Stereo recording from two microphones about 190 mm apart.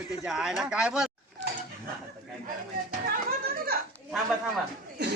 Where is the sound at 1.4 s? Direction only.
65° right (ahead or behind).